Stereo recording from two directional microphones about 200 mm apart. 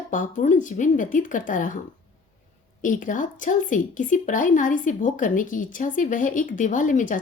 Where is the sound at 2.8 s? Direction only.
40° left (ahead or behind).